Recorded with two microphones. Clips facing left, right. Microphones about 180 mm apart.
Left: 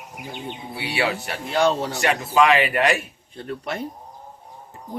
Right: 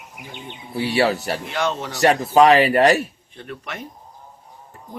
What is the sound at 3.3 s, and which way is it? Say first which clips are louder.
Speech: left 4 dB; 30° left (ahead or behind).